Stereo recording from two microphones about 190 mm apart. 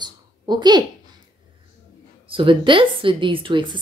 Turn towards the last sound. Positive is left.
turn(degrees=-25)  # may be behind; listen again after turning